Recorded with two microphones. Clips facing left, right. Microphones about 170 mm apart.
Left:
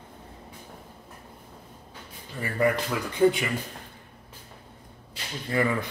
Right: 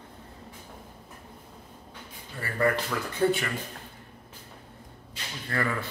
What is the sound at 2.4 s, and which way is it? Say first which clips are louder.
A man's voice: left 2 dB; 15° left (ahead or behind).